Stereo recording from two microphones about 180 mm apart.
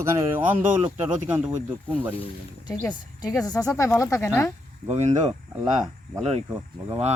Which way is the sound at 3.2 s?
20° left (ahead or behind).